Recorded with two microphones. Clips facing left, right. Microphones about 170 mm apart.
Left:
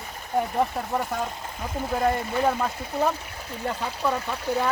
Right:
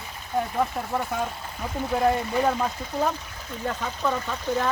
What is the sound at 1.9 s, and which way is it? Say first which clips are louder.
Speech: right 2 dB; centre (ahead or behind).